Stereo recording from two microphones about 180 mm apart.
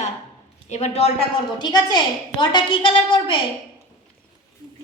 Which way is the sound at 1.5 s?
25° left (ahead or behind).